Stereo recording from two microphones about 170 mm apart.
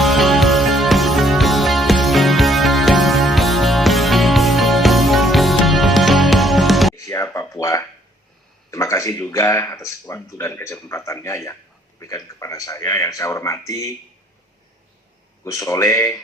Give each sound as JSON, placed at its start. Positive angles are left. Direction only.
{"t": 0.0, "sound": "music", "side_deg": 0}
{"t": 6.9, "sound": "a sound", "side_deg": 20}
{"t": 8.7, "sound": "speech", "side_deg": 20}
{"t": 15.4, "sound": "speech", "side_deg": 20}